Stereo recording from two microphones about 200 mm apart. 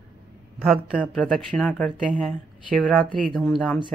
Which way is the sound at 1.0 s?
Centre (ahead or behind).